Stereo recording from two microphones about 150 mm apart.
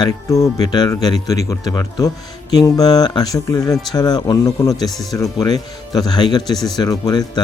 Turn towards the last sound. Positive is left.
turn(degrees=25)  # may be behind; listen again after turning